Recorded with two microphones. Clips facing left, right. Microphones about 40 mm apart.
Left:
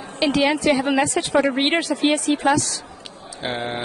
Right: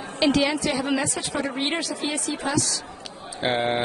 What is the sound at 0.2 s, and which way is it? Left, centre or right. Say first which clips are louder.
Speech: left 1 dB; centre.